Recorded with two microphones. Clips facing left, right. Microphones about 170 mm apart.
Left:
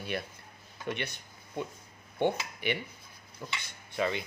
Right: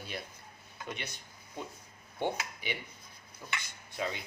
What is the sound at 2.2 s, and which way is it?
Speech, 65° left (ahead or behind).